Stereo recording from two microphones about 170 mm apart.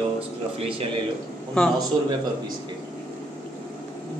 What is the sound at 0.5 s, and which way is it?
Speech, 35° right (ahead or behind).